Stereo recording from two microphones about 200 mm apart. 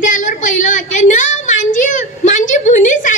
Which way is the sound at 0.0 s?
40° left (ahead or behind).